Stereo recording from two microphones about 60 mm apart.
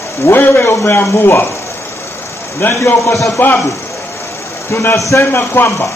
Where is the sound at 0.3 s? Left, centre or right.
Left.